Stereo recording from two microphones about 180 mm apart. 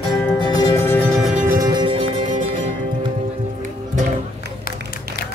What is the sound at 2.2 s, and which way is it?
Music, 45° right (ahead or behind).